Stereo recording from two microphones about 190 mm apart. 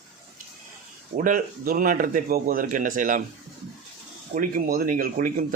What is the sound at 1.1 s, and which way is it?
A man's voice, 45° right (ahead or behind).